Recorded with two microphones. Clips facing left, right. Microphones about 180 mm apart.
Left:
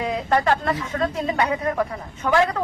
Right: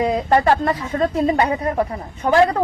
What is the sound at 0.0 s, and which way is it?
Speech, 35° right (ahead or behind).